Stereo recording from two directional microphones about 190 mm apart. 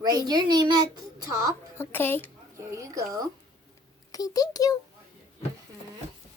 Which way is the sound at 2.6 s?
15° right (ahead or behind).